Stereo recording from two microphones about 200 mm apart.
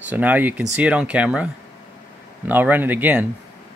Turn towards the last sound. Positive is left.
turn(degrees=-10)  # may be behind; listen again after turning